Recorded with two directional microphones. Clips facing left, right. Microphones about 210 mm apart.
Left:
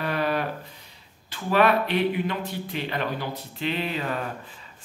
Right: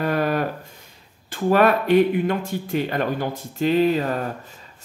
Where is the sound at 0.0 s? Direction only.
45° right (ahead or behind).